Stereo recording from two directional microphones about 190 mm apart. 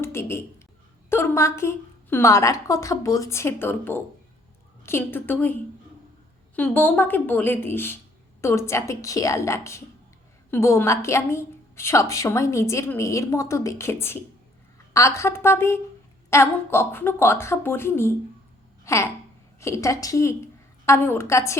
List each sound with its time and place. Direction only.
0.0 s a woman's voice: 15° left (ahead or behind)
6.6 s a woman's voice: 10° left (ahead or behind)